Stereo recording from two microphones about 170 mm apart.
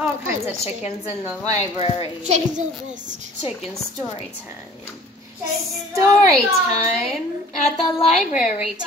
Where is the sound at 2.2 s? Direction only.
45° right (ahead or behind).